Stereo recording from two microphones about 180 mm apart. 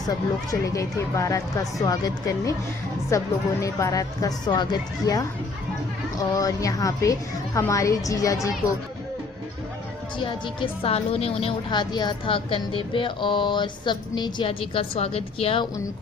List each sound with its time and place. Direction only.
0.6 s a woman's voice: 15° left (ahead or behind)
10.2 s a woman's voice: 25° left (ahead or behind)